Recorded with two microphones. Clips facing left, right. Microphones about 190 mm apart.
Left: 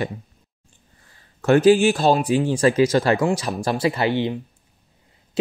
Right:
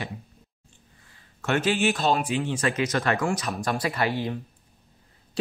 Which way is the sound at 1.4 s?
35° left (ahead or behind).